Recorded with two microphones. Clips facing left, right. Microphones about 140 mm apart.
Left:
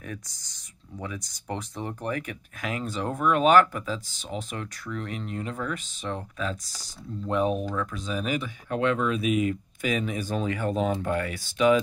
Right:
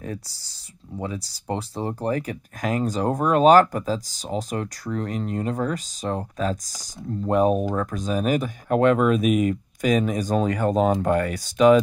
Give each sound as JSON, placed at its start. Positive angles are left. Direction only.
{"t": 0.0, "sound": "speech", "side_deg": -30}